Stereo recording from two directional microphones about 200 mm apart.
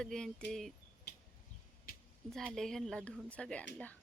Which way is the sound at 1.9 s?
45° left (ahead or behind).